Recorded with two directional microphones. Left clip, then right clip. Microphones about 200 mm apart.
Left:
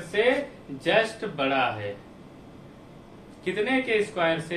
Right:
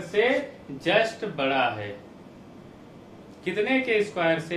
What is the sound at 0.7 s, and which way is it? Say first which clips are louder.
Speech: even; 15° right (ahead or behind).